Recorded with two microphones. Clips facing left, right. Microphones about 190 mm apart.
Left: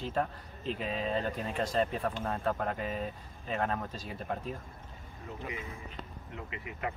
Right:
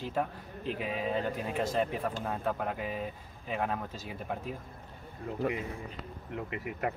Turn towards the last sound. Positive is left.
turn(degrees=-50)  # may be behind; listen again after turning